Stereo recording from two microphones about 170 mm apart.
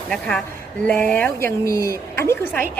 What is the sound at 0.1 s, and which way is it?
A woman's voice, 5° left (ahead or behind).